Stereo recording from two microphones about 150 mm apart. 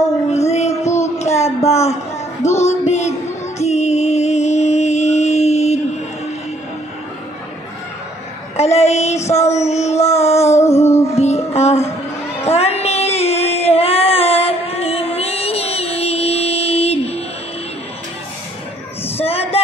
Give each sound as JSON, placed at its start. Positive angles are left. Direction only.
{"t": 0.5, "sound": "music", "side_deg": 45}
{"t": 1.2, "sound": "a sound", "side_deg": 45}
{"t": 1.7, "sound": "speech", "side_deg": 45}
{"t": 2.4, "sound": "music", "side_deg": 45}
{"t": 8.5, "sound": "a sound", "side_deg": 45}
{"t": 10.6, "sound": "music", "side_deg": 20}
{"t": 11.1, "sound": "music", "side_deg": 45}
{"t": 12.4, "sound": "child singing", "side_deg": 45}
{"t": 19.1, "sound": "a sound", "side_deg": 40}